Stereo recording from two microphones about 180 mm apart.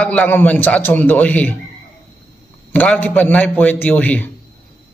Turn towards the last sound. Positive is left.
turn(degrees=10)  # may be behind; listen again after turning